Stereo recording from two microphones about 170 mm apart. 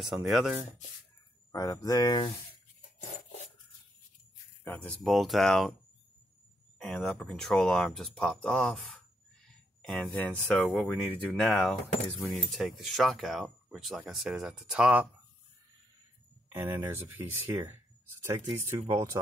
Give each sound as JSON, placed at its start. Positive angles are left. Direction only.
{"t": 0.0, "sound": "speech", "side_deg": 0}
{"t": 1.5, "sound": "speech", "side_deg": 20}
{"t": 4.6, "sound": "speech", "side_deg": 5}
{"t": 6.8, "sound": "speech", "side_deg": 5}
{"t": 16.5, "sound": "speech", "side_deg": -15}